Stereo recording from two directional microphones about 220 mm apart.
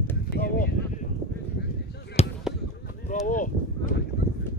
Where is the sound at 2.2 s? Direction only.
30° left (ahead or behind).